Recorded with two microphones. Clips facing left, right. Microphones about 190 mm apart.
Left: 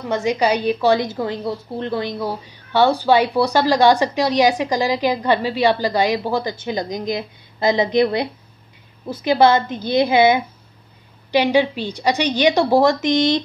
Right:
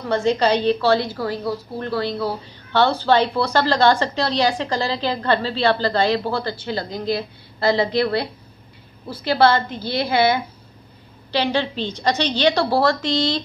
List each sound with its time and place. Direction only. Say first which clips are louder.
0.1 s a woman's voice: right 1 dB; 15° left (ahead or behind)